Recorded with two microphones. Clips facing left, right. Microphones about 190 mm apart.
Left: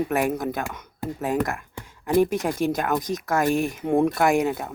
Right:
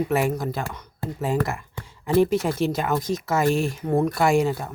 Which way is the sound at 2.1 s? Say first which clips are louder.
Right 1 dB; 15° left (ahead or behind).